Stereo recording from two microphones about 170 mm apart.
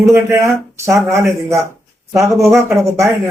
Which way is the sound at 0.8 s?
15° right (ahead or behind).